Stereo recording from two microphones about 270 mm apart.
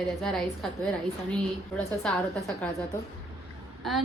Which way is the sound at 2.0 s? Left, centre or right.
Centre.